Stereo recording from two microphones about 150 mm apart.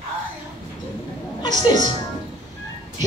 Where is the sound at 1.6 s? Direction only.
30° left (ahead or behind).